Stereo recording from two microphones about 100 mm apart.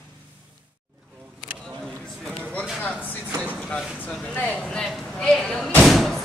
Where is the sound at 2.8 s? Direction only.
10° left (ahead or behind).